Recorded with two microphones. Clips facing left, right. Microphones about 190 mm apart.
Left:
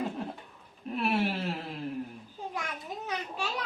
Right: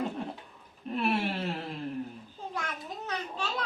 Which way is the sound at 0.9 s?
Centre (ahead or behind).